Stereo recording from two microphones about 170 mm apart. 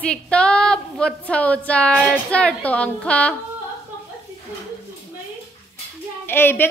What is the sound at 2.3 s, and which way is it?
A woman's voice, 5° left (ahead or behind).